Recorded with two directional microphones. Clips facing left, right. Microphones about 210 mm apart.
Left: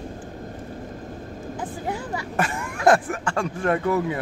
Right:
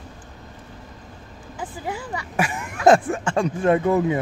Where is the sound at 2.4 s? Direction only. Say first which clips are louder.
Right 2 dB; 15° right (ahead or behind).